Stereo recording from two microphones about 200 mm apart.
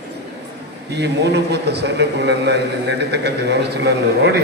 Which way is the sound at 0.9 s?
55° right (ahead or behind).